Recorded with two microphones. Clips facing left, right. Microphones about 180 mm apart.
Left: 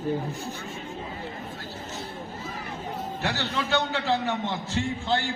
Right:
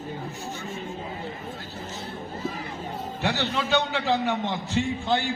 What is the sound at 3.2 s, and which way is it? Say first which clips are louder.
A man's voice: right 3 dB; 15° right (ahead or behind).